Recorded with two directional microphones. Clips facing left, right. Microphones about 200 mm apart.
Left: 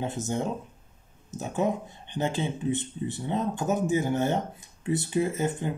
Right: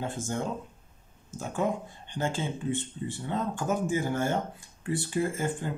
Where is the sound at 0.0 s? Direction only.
20° left (ahead or behind).